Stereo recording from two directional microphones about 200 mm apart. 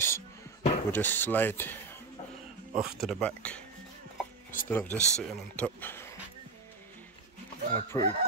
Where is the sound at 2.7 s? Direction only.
Centre (ahead or behind).